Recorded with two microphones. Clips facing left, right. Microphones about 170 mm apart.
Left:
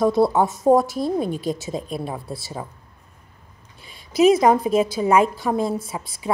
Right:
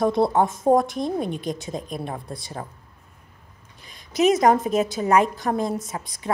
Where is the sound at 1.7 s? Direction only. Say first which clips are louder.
Left 3 dB; 30° left (ahead or behind).